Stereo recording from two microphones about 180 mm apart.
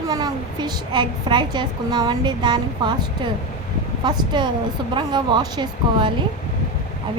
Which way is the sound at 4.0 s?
25° right (ahead or behind).